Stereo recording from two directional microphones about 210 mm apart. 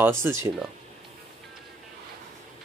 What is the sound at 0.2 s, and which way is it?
Speech, 10° right (ahead or behind).